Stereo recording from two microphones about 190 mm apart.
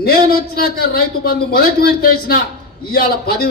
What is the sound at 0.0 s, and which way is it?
A man's voice, 55° left (ahead or behind).